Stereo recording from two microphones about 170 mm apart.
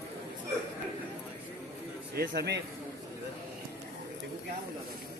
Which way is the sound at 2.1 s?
70° right (ahead or behind).